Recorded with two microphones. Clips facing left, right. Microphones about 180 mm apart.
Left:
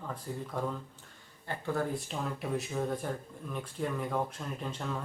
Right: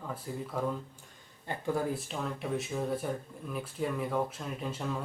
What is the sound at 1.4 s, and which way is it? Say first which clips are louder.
Speech: right 2 dB; 15° right (ahead or behind).